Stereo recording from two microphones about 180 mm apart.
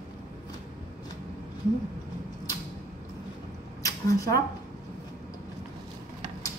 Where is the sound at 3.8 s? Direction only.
20° left (ahead or behind).